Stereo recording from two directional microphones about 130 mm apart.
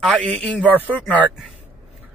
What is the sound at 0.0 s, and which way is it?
Speech, centre (ahead or behind).